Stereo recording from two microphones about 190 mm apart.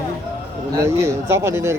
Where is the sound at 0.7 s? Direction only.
15° right (ahead or behind).